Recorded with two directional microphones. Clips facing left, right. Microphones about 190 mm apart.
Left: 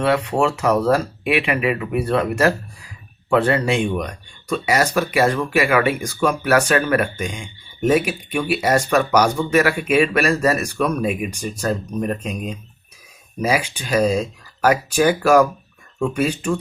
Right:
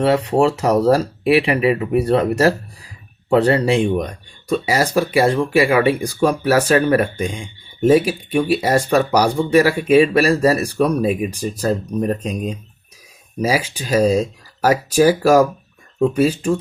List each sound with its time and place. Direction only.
0.0 s speech: 35° right (ahead or behind)